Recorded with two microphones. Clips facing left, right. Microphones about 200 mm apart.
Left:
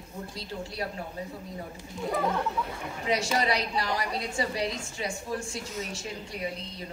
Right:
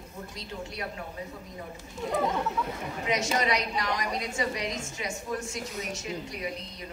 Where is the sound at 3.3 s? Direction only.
30° left (ahead or behind).